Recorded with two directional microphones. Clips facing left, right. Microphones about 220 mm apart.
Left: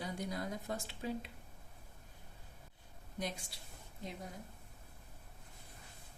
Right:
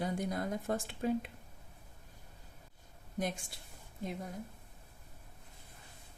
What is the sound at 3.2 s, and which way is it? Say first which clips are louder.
Speech: right 5 dB; 50° right (ahead or behind).